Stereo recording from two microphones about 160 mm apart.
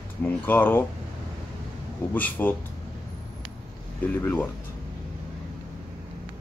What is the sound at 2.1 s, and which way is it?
Speech, 10° left (ahead or behind).